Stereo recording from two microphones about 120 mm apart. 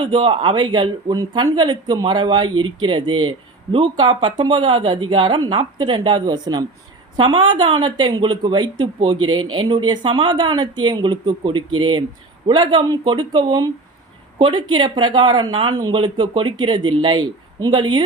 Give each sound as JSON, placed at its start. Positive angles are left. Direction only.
{"t": 0.0, "sound": "speech", "side_deg": -45}